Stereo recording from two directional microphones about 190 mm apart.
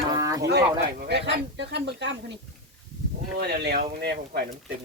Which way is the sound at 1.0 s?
65° right (ahead or behind).